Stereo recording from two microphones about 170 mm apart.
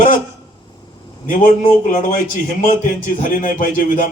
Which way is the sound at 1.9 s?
55° left (ahead or behind).